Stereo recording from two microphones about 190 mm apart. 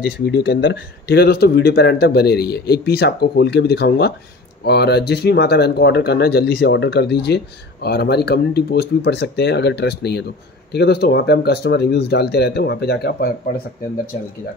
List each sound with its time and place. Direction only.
0.3 s speech: 70° left (ahead or behind)